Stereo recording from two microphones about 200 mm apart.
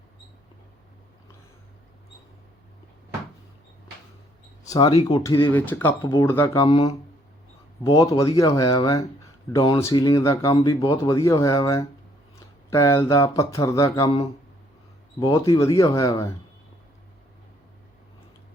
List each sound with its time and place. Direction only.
4.6 s speech: 20° left (ahead or behind)
6.7 s speech: 25° left (ahead or behind)
15.2 s speech: 15° left (ahead or behind)